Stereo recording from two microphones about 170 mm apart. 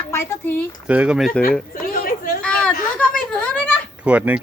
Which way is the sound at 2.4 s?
5° left (ahead or behind).